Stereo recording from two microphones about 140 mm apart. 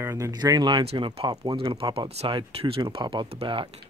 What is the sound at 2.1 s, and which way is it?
Speech, 50° right (ahead or behind).